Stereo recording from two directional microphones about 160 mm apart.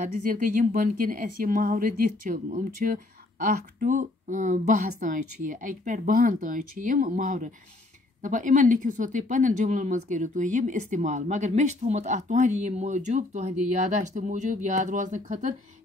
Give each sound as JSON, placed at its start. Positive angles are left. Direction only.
{"t": 0.0, "sound": "a woman's voice", "side_deg": -60}